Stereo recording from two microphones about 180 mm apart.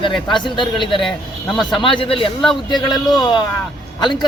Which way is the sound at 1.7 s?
30° left (ahead or behind).